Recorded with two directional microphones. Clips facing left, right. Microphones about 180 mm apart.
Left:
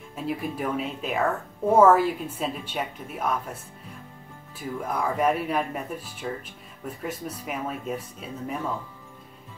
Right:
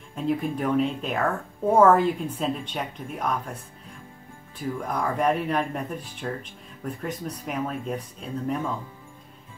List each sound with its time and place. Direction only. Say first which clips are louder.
0.1 s speech: right 4 dB; 5° left (ahead or behind)
4.6 s speech: right 1 dB; 5° left (ahead or behind)